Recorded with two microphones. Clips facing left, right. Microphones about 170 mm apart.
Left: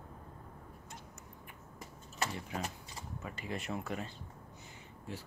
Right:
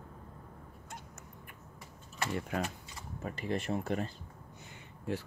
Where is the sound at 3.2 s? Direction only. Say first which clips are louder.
Right 7 dB; 40° right (ahead or behind).